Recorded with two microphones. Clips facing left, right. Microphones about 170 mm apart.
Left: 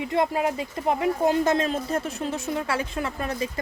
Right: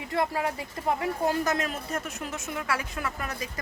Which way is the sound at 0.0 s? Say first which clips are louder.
Left 5 dB; 20° left (ahead or behind).